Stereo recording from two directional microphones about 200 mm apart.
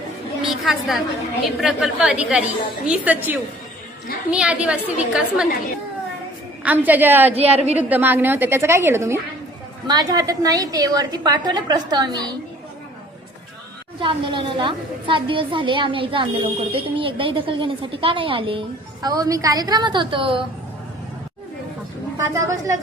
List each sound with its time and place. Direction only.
0.4 s a sound: centre (ahead or behind)
1.5 s a woman's voice: centre (ahead or behind)
6.6 s a woman's voice: 10° right (ahead or behind)
7.3 s a woman's voice: 30° right (ahead or behind)
7.9 s a woman's voice: 10° right (ahead or behind)
14.0 s a woman's voice: 25° right (ahead or behind)
22.3 s a woman's voice: 15° right (ahead or behind)